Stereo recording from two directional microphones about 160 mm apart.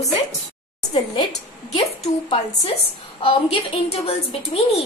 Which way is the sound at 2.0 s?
40° left (ahead or behind).